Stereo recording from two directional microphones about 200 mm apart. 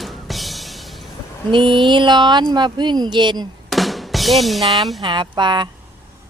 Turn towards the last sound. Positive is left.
turn(degrees=-20)  # may be behind; listen again after turning